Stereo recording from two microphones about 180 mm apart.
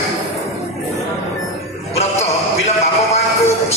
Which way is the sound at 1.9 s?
35° left (ahead or behind).